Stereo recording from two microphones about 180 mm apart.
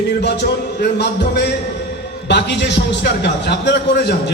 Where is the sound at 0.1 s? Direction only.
70° left (ahead or behind).